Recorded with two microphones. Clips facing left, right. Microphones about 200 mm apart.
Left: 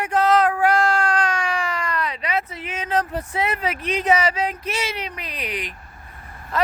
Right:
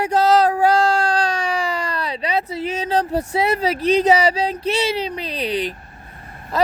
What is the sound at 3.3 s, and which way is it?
Speech, 35° right (ahead or behind).